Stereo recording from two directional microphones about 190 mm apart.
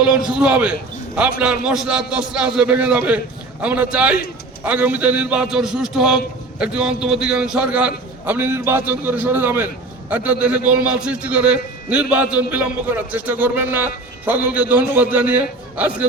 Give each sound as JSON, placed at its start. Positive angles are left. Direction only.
{"t": 0.0, "sound": "a man's voice", "side_deg": -5}